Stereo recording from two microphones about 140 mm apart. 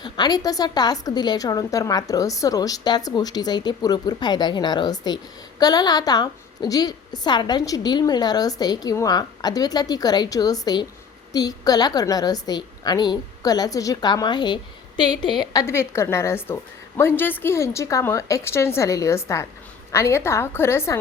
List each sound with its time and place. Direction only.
0.0 s a woman's voice: 30° left (ahead or behind)
15.6 s a woman's voice: 20° left (ahead or behind)